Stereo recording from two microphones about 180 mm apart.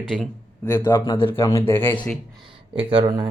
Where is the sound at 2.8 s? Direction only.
30° right (ahead or behind).